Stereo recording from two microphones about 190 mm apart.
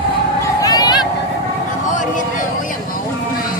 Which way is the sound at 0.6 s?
20° left (ahead or behind).